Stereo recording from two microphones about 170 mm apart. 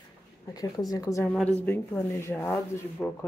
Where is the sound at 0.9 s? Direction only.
20° left (ahead or behind).